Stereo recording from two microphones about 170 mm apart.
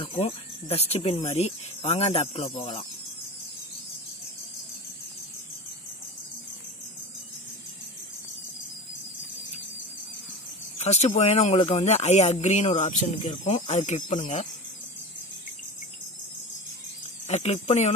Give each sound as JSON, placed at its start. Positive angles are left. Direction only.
{"t": 0.0, "sound": "speech", "side_deg": 35}
{"t": 10.8, "sound": "speech", "side_deg": 40}
{"t": 17.3, "sound": "speech", "side_deg": 40}